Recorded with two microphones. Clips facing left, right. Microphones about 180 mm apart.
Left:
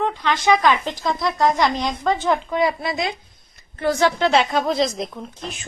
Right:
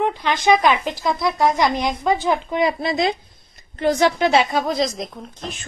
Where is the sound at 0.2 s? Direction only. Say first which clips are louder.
Even; 15° right (ahead or behind).